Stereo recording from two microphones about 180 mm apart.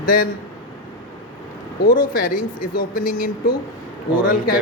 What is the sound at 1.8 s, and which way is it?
Speech, 55° left (ahead or behind).